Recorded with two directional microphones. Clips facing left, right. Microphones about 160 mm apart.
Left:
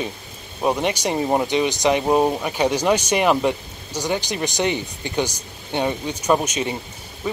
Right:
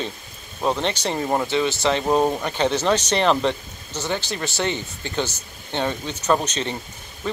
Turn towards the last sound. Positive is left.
turn(degrees=10)  # may be behind; listen again after turning